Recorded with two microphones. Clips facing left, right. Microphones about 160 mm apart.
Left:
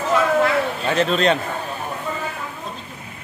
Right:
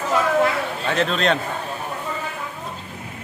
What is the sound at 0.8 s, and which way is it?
Speech, centre (ahead or behind).